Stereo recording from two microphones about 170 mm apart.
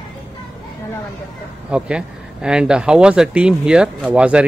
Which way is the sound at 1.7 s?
5° right (ahead or behind).